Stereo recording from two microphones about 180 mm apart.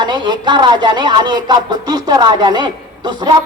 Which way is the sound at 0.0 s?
25° right (ahead or behind).